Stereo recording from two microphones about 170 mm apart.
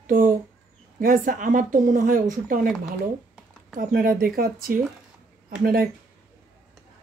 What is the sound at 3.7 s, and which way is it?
Speech, 60° right (ahead or behind).